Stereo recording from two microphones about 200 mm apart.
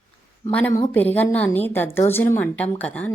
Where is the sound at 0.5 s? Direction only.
15° left (ahead or behind).